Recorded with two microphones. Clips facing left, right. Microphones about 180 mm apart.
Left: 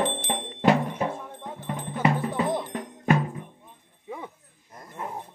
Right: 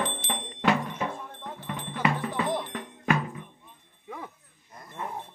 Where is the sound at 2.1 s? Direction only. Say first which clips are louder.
Left 3 dB; 25° left (ahead or behind).